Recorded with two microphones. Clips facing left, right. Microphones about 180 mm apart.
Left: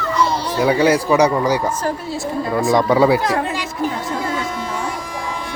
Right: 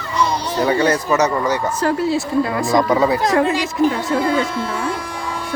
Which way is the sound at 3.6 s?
80° right.